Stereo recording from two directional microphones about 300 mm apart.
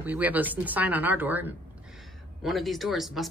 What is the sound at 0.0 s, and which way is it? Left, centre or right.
Speech, centre.